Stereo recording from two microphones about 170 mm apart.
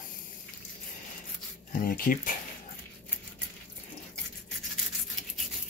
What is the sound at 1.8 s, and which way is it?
Speech, 60° left (ahead or behind).